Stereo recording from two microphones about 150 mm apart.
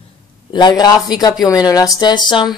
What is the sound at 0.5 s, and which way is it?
Speech, 30° left (ahead or behind).